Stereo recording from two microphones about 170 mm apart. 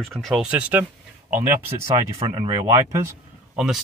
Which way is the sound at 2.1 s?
30° right (ahead or behind).